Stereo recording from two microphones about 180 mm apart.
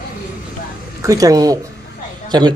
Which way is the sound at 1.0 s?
20° right (ahead or behind).